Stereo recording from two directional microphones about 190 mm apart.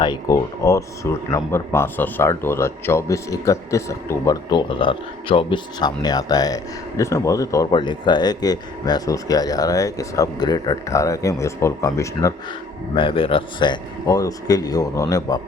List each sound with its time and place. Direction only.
0.0 s speech: 20° left (ahead or behind)
12.9 s a man's voice: 25° left (ahead or behind)